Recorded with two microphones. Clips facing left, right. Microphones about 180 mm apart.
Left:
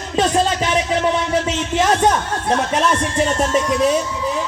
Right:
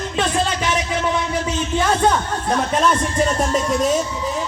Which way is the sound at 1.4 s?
90° left.